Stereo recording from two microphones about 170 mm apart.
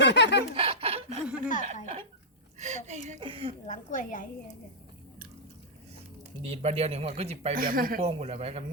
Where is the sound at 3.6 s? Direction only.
50° left (ahead or behind).